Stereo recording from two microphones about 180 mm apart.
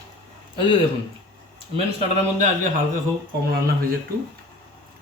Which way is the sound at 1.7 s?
35° right (ahead or behind).